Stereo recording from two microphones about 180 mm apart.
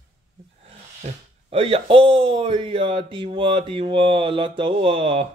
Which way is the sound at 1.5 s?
30° right (ahead or behind).